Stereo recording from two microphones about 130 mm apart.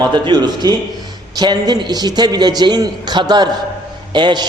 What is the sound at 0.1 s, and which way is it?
A man's voice, 35° right (ahead or behind).